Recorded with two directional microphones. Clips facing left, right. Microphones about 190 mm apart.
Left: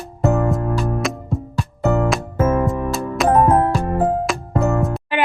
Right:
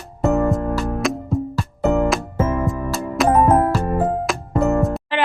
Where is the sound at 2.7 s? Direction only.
Centre (ahead or behind).